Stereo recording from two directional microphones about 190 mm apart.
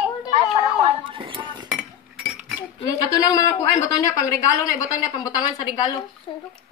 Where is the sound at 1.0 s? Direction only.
25° right (ahead or behind).